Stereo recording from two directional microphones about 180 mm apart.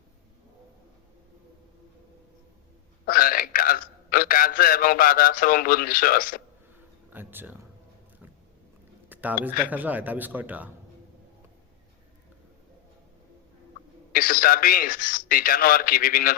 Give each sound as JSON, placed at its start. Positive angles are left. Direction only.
{"t": 3.1, "sound": "a man's voice", "side_deg": 55}
{"t": 7.1, "sound": "speech", "side_deg": -10}
{"t": 9.0, "sound": "speech", "side_deg": -10}
{"t": 14.1, "sound": "a man's voice", "side_deg": 50}